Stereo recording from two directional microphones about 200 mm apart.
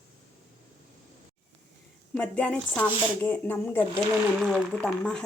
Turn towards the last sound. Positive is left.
turn(degrees=5)  # may be behind; listen again after turning